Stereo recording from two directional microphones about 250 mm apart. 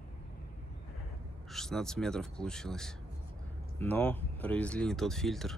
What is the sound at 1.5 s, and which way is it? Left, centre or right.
Speech, centre.